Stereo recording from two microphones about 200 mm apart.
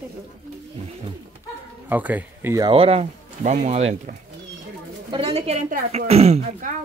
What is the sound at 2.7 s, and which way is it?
Speech, 30° right (ahead or behind).